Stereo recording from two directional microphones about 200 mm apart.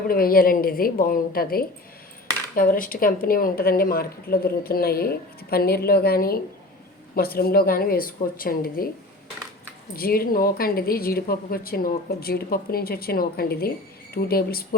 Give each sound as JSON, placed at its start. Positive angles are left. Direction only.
{"t": 0.1, "sound": "a woman's voice", "side_deg": 45}
{"t": 9.9, "sound": "a woman's voice", "side_deg": 50}